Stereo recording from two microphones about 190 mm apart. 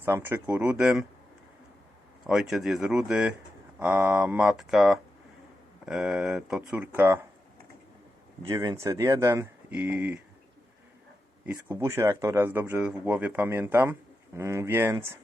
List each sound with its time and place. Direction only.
0.0 s speech: 10° right (ahead or behind)
2.2 s speech: centre (ahead or behind)
8.4 s speech: 20° right (ahead or behind)
11.5 s speech: 15° right (ahead or behind)